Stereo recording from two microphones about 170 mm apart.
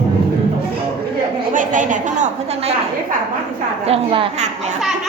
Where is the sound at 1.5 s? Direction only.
50° right (ahead or behind).